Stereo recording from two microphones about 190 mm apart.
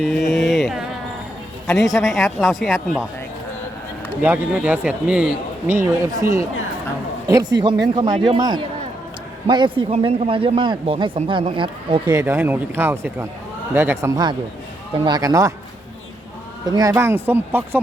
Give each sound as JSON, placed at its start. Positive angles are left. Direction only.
{"t": 0.0, "sound": "music", "side_deg": 0}
{"t": 1.6, "sound": "a man's voice", "side_deg": 0}
{"t": 4.2, "sound": "a man's voice", "side_deg": -10}
{"t": 12.2, "sound": "a man's voice", "side_deg": -10}
{"t": 16.7, "sound": "a man's voice", "side_deg": -15}